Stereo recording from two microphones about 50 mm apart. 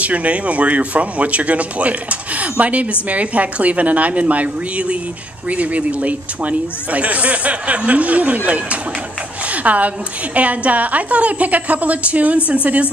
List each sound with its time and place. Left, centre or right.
0.0 s speech: right